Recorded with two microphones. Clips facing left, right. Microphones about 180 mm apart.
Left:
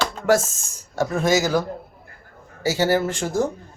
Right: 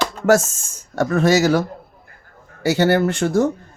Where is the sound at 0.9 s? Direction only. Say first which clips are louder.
Right 4 dB; 65° right (ahead or behind).